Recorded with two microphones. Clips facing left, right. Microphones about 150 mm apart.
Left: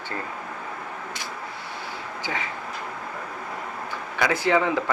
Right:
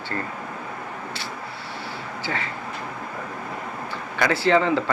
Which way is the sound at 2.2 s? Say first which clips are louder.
Right 2 dB; 15° left (ahead or behind).